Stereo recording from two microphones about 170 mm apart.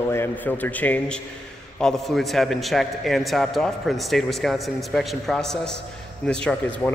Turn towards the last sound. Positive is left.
turn(degrees=5)  # may be behind; listen again after turning